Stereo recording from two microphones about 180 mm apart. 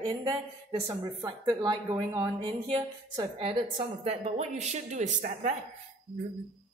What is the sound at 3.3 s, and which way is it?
A woman's voice, 30° right (ahead or behind).